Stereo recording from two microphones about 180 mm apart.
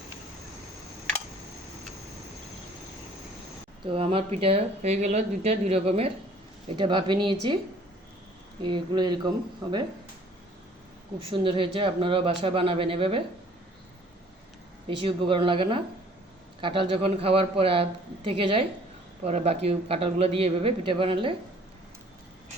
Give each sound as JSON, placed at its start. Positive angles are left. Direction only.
{"t": 3.8, "sound": "speech", "side_deg": -30}
{"t": 8.6, "sound": "speech", "side_deg": -25}
{"t": 11.3, "sound": "speech", "side_deg": -30}
{"t": 15.0, "sound": "speech", "side_deg": -30}